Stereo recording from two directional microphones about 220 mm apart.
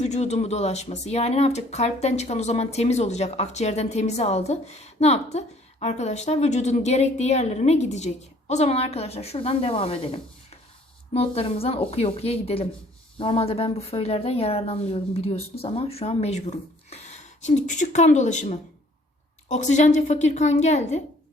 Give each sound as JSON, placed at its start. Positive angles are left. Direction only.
{"t": 0.0, "sound": "speech", "side_deg": 30}